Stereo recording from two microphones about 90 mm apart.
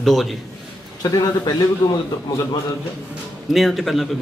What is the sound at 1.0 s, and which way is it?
Speech, 45° left (ahead or behind).